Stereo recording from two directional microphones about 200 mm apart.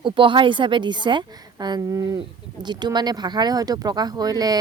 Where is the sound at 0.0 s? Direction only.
25° right (ahead or behind).